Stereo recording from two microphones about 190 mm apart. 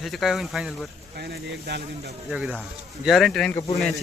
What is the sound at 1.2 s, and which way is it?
Speech, 60° right (ahead or behind).